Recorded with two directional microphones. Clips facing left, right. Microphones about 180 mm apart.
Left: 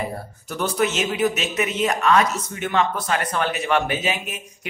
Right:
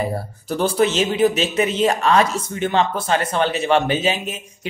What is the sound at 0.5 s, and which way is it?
Speech, 30° right (ahead or behind).